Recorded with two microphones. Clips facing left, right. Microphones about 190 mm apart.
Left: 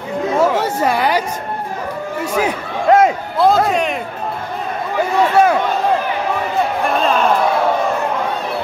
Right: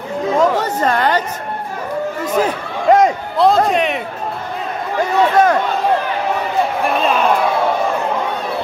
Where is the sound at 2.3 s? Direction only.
5° left (ahead or behind).